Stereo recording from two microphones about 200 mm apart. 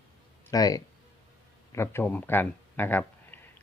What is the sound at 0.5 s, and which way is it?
Speech, 20° left (ahead or behind).